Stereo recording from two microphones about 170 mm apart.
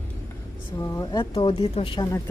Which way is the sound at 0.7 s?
20° left (ahead or behind).